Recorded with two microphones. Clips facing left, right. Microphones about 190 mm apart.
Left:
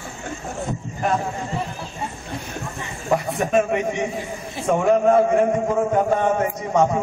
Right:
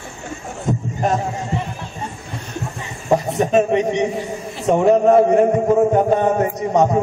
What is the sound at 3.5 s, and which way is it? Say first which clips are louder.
A man's voice: right 4 dB; 30° right (ahead or behind).